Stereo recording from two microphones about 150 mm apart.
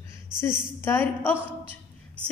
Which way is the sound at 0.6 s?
15° left (ahead or behind).